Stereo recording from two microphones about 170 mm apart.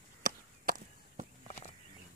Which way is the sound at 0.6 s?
50° right (ahead or behind).